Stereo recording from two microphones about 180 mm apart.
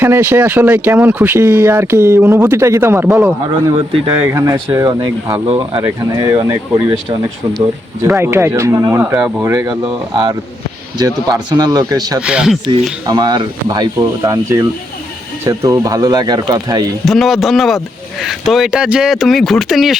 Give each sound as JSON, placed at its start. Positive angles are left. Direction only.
{"t": 0.0, "sound": "speech", "side_deg": -10}
{"t": 3.7, "sound": "speech", "side_deg": -25}
{"t": 4.3, "sound": "speech", "side_deg": -15}
{"t": 8.0, "sound": "speech", "side_deg": -15}
{"t": 12.2, "sound": "speech", "side_deg": -5}
{"t": 13.1, "sound": "speech", "side_deg": -20}
{"t": 17.1, "sound": "speech", "side_deg": 0}